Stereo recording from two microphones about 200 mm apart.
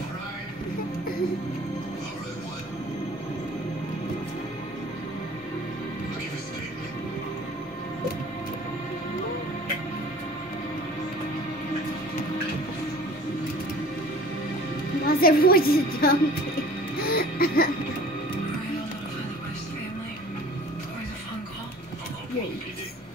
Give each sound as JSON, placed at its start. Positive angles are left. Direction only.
{"t": 15.0, "sound": "a woman's voice", "side_deg": 50}
{"t": 17.0, "sound": "music", "side_deg": 50}